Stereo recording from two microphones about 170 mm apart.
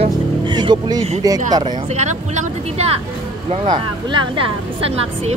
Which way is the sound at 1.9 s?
45° right (ahead or behind).